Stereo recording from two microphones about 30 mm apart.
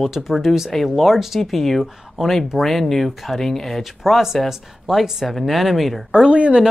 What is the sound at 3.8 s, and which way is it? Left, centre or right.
Speech, centre.